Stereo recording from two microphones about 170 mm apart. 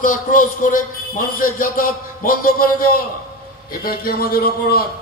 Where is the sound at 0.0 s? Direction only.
50° left (ahead or behind).